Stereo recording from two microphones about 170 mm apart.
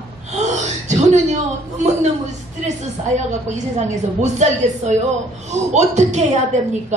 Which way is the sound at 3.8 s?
45° right (ahead or behind).